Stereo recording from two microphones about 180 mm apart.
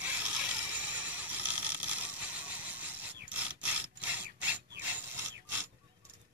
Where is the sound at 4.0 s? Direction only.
10° right (ahead or behind).